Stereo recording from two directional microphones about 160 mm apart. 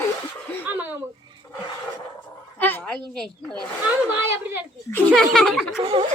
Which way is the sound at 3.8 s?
15° right (ahead or behind).